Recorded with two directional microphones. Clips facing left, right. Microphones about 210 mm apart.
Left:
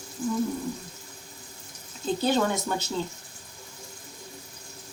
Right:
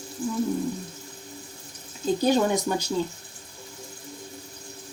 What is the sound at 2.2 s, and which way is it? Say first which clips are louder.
Speech: right 3 dB; 15° right (ahead or behind).